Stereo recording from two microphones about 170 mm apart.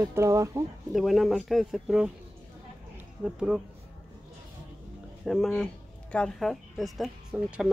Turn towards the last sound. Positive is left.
turn(degrees=-5)  # may be behind; listen again after turning